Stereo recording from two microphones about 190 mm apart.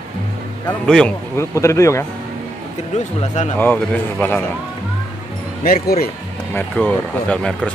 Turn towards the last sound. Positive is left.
turn(degrees=5)  # may be behind; listen again after turning